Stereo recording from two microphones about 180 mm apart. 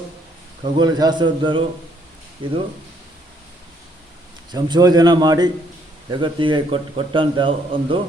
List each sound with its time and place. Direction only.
0.6 s a man's voice: 25° right (ahead or behind)
4.5 s a man's voice: 20° right (ahead or behind)